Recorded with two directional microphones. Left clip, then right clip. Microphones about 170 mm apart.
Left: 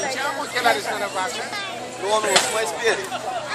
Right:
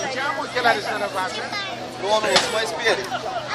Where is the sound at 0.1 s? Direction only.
45° left (ahead or behind).